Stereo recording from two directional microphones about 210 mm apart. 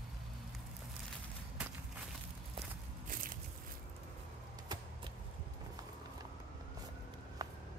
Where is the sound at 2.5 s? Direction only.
40° right (ahead or behind).